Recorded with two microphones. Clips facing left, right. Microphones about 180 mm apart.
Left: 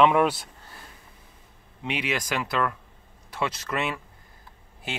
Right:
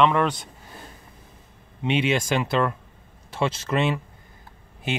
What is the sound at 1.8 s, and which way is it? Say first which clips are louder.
Speech: right 7 dB; 25° right (ahead or behind).